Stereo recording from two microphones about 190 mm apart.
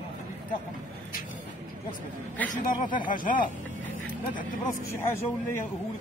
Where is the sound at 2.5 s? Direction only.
45° left (ahead or behind).